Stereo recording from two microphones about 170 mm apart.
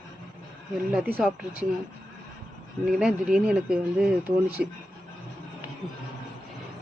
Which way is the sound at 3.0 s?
5° right (ahead or behind).